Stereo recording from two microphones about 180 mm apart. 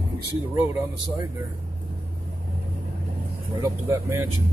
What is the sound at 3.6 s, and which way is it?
Speech, 15° right (ahead or behind).